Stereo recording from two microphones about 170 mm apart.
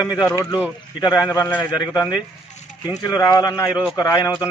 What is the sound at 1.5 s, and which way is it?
Speech, 10° left (ahead or behind).